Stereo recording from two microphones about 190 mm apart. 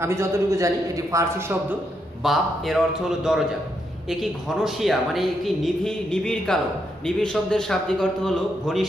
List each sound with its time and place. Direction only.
0.0 s a man's voice: 15° right (ahead or behind)
2.2 s a woman's voice: centre (ahead or behind)